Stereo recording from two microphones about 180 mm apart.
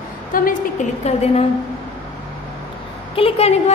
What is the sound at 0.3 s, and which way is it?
Speech, 50° left (ahead or behind).